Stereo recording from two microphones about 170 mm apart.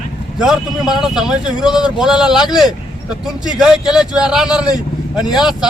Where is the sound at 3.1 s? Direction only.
Centre (ahead or behind).